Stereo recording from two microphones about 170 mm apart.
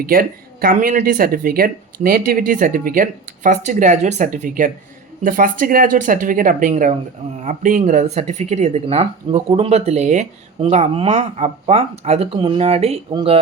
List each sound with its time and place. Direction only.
0.0 s speech: 60° right (ahead or behind); by 13.4 s 30° right (ahead or behind)